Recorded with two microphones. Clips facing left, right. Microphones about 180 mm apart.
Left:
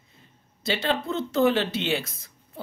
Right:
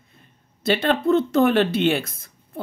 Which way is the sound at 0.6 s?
55° right (ahead or behind).